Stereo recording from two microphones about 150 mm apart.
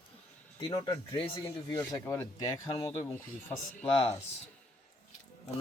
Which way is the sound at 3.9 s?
40° left (ahead or behind).